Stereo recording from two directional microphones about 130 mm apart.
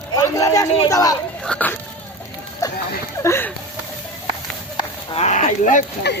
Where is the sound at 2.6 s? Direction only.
30° left (ahead or behind).